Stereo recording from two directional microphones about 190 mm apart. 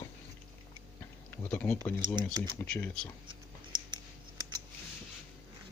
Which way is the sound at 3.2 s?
25° right (ahead or behind).